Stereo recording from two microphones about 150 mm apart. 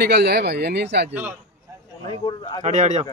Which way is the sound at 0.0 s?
90° right.